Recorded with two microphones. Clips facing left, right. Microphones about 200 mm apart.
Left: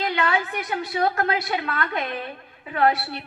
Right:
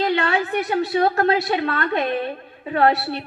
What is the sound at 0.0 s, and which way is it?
A woman's voice, 30° right (ahead or behind).